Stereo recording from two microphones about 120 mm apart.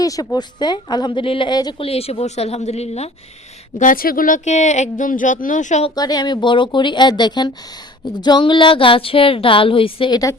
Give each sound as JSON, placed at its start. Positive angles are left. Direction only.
{"t": 0.0, "sound": "speech", "side_deg": 30}
{"t": 1.8, "sound": "speech", "side_deg": 55}
{"t": 4.3, "sound": "speech", "side_deg": 80}
{"t": 5.9, "sound": "speech", "side_deg": 35}